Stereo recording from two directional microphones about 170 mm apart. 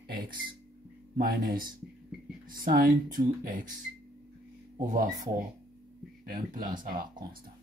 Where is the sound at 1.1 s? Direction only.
60° right (ahead or behind).